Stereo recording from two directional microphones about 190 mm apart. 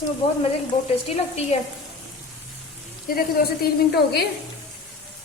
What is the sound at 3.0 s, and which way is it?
A woman's voice, 50° left (ahead or behind).